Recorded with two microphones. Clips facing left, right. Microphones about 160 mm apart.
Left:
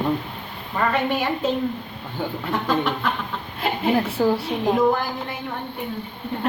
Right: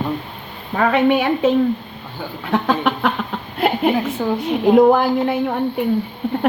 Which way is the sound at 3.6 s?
65° right (ahead or behind).